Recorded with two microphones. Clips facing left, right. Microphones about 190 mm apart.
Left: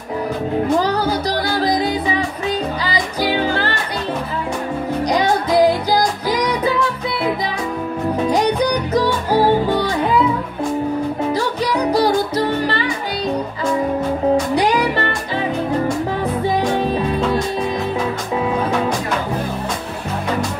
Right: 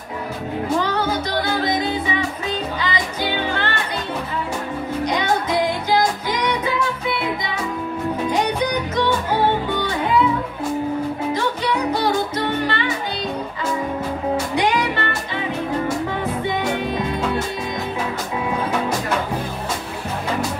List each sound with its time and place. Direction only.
0.7 s music: 35° left (ahead or behind)
2.8 s music: 35° left (ahead or behind)
5.0 s music: 35° left (ahead or behind)
8.3 s music: 35° left (ahead or behind)
11.3 s music: 35° left (ahead or behind)
14.5 s music: 35° left (ahead or behind)